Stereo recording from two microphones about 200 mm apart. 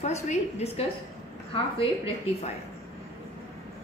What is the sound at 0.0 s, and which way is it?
Speech, 35° left (ahead or behind).